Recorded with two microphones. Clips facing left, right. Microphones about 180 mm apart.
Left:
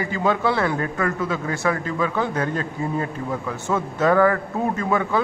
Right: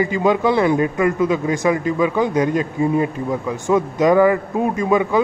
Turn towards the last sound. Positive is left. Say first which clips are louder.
# right 5 dB
turn(degrees=-15)  # may be behind; listen again after turning